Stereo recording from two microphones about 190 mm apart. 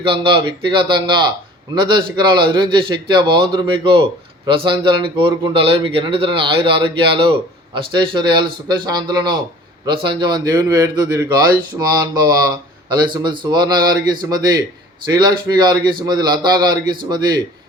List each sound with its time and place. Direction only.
0.0 s speech: 30° right (ahead or behind)